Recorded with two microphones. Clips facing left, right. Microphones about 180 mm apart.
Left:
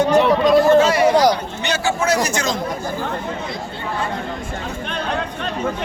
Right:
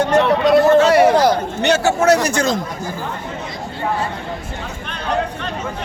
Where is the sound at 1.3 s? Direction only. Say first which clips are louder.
Right 4 dB; 60° right (ahead or behind).